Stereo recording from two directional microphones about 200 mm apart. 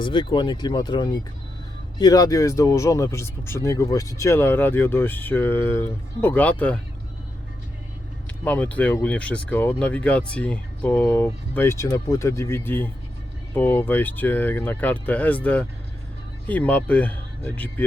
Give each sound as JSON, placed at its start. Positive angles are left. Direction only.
{"t": 0.0, "sound": "speech", "side_deg": 25}
{"t": 8.4, "sound": "speech", "side_deg": 5}